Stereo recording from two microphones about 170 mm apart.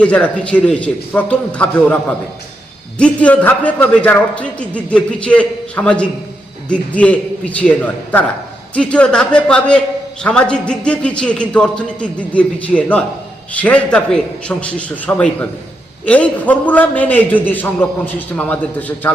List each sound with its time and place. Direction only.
0.0 s a man's voice: 5° left (ahead or behind)